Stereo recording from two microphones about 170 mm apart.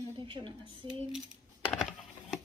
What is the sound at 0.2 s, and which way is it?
Speech, 30° right (ahead or behind).